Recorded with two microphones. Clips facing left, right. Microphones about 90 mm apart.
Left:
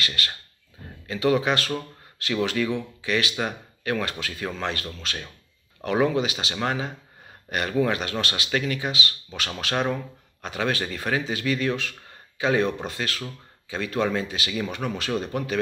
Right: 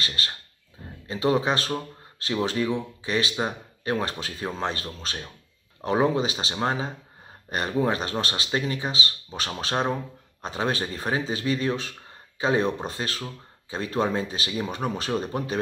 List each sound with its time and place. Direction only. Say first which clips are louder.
0.0 s speech: left 2 dB; 30° right (ahead or behind)